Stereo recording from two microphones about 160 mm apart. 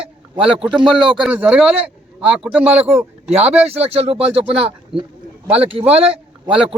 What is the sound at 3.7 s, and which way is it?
Speech, 40° right (ahead or behind).